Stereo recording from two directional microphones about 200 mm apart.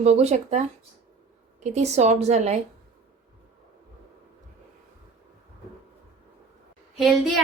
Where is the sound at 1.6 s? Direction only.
35° right (ahead or behind).